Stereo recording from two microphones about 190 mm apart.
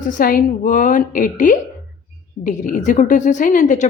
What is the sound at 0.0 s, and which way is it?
A woman's voice, 45° left (ahead or behind).